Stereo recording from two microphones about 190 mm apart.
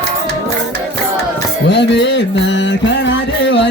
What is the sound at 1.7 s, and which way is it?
Music, 65° left (ahead or behind).